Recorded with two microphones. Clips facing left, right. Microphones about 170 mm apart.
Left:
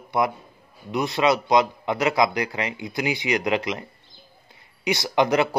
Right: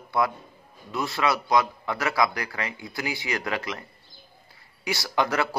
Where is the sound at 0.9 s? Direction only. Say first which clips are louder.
Left 5 dB; 20° left (ahead or behind).